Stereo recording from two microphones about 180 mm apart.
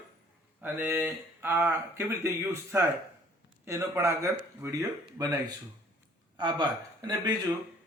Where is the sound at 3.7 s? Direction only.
15° right (ahead or behind).